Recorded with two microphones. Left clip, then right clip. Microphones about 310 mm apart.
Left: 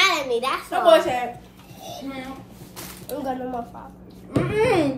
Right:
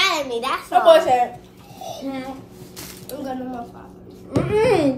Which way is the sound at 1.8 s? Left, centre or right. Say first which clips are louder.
Right 4 dB; centre.